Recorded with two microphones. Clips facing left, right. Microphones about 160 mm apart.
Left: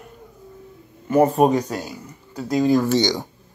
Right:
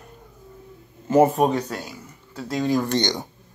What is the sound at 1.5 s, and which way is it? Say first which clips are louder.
Speech: left 4 dB; 10° left (ahead or behind).